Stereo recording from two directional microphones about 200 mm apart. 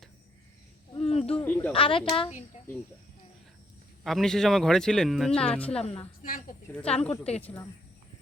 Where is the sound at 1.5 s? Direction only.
10° left (ahead or behind).